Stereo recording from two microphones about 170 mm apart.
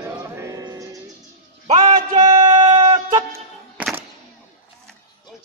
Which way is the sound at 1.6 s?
30° right (ahead or behind).